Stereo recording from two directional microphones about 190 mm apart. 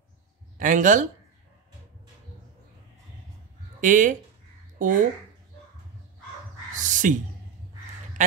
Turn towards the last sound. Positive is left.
turn(degrees=-45)  # may be behind; listen again after turning